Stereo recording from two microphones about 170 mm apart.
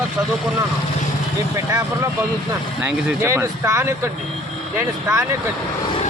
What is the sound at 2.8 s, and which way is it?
Speech, 15° right (ahead or behind).